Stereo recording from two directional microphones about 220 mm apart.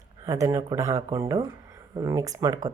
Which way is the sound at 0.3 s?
15° right (ahead or behind).